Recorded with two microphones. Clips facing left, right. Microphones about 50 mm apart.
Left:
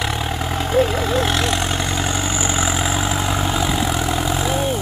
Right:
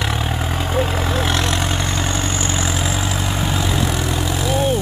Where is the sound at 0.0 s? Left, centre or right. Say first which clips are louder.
Even; centre.